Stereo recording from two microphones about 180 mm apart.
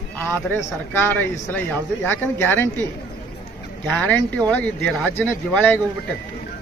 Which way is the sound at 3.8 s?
10° left (ahead or behind).